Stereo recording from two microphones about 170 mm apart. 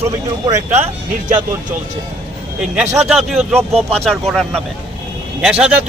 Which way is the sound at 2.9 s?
Centre (ahead or behind).